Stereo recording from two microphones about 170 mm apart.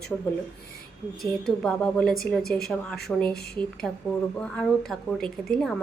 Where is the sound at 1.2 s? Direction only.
5° left (ahead or behind).